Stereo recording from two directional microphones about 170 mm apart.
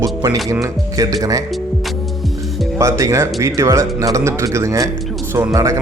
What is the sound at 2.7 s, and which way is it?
Speech, 15° right (ahead or behind).